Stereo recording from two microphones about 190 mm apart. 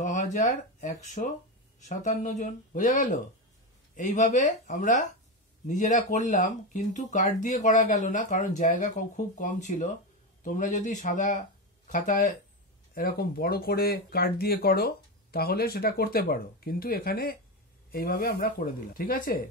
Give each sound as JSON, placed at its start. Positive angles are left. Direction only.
{"t": 0.0, "sound": "speech", "side_deg": 40}
{"t": 12.9, "sound": "speech", "side_deg": 50}